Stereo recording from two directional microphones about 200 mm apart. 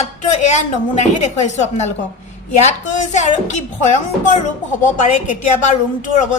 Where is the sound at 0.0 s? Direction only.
35° left (ahead or behind).